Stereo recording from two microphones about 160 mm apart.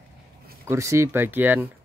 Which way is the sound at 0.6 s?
15° right (ahead or behind).